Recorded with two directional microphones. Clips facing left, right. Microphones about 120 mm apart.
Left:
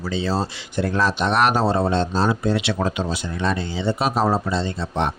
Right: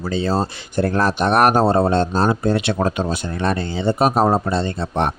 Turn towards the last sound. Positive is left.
turn(degrees=-55)  # may be behind; listen again after turning